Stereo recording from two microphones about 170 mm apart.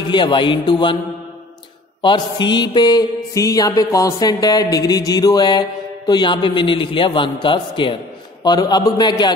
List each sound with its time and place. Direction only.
0.1 s mantra: 30° left (ahead or behind)
2.0 s mantra: 25° left (ahead or behind)